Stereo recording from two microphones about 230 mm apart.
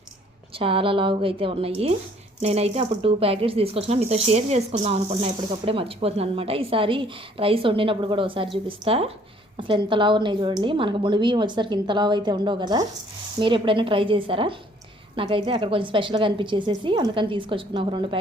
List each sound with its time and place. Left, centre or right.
0.6 s speech: right